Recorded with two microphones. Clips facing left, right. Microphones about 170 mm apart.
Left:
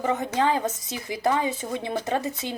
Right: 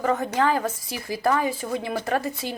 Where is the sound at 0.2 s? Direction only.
20° left (ahead or behind).